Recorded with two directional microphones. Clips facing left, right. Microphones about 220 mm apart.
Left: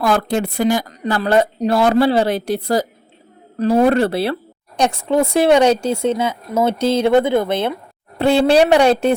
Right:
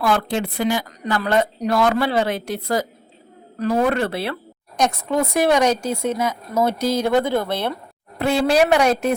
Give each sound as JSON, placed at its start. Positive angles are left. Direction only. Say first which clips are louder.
{"t": 0.0, "sound": "a woman's voice", "louder": "left 3 dB", "side_deg": 45}
{"t": 8.2, "sound": "speech", "louder": "left 4 dB", "side_deg": 30}